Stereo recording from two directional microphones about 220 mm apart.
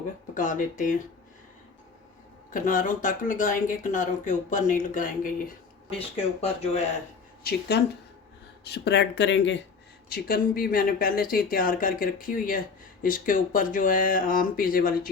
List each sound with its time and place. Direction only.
0.3 s speech: 35° left (ahead or behind)
2.5 s speech: 35° left (ahead or behind)
6.4 s speech: 30° left (ahead or behind)
7.7 s speech: 50° left (ahead or behind)
10.1 s speech: 40° left (ahead or behind)